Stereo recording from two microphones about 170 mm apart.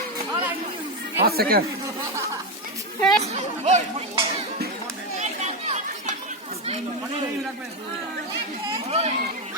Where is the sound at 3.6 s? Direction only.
40° right (ahead or behind).